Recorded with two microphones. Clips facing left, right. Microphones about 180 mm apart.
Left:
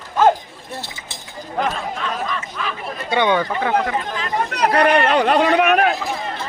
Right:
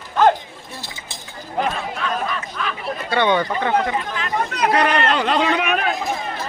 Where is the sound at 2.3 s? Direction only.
Centre (ahead or behind).